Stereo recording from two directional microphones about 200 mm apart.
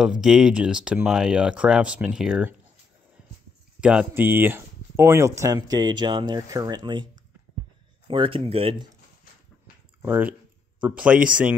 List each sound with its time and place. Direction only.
0.0 s speech: centre (ahead or behind)
3.2 s a sound: 5° right (ahead or behind)
3.8 s speech: 5° right (ahead or behind); by 7.1 s 20° right (ahead or behind)
8.1 s speech: 25° right (ahead or behind)
10.0 s speech: 10° right (ahead or behind)